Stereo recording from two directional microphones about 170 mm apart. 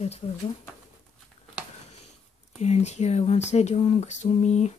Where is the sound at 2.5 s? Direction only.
40° left (ahead or behind).